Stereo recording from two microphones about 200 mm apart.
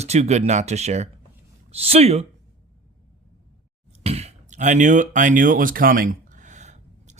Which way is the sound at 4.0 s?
30° right (ahead or behind).